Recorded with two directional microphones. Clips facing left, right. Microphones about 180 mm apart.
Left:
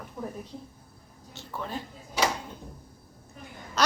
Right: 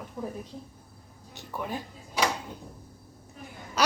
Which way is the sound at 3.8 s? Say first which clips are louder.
Even; 10° right (ahead or behind).